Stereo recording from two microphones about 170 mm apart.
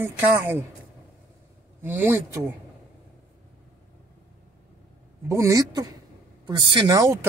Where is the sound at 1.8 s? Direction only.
10° right (ahead or behind).